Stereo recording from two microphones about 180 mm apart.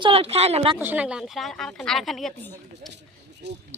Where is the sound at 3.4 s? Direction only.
70° right (ahead or behind).